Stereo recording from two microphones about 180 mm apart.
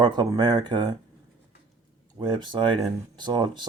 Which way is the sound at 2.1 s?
25° right (ahead or behind).